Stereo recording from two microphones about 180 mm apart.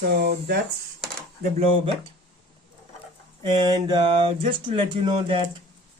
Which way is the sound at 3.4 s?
25° right (ahead or behind).